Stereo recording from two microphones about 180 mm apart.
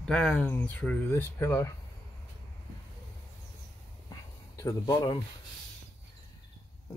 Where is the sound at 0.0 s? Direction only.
5° left (ahead or behind).